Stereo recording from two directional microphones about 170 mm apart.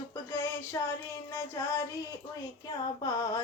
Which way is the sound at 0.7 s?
20° left (ahead or behind).